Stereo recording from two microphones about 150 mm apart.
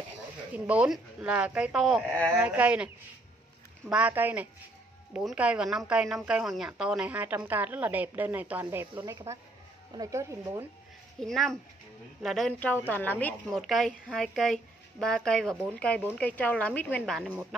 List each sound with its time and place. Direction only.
0.5 s speech: 10° right (ahead or behind)
2.1 s speech: 15° right (ahead or behind)
3.9 s speech: 10° right (ahead or behind)
11.1 s a woman's voice: centre (ahead or behind)
13.5 s a woman's voice: centre (ahead or behind)